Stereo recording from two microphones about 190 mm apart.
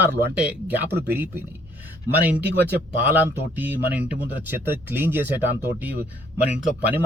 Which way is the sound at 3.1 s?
10° right (ahead or behind).